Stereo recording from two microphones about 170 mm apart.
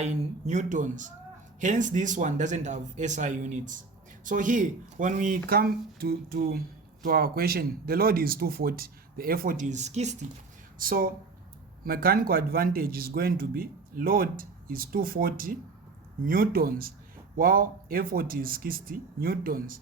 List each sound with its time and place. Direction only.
0.0 s speech: 45° right (ahead or behind)
10.8 s speech: 55° right (ahead or behind)